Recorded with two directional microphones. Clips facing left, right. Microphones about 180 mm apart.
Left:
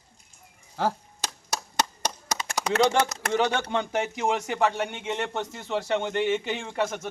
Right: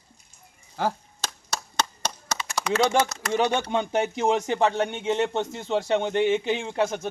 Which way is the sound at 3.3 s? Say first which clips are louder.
Right 2 dB; 15° right (ahead or behind).